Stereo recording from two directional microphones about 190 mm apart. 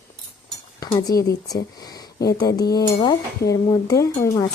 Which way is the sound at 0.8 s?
20° left (ahead or behind).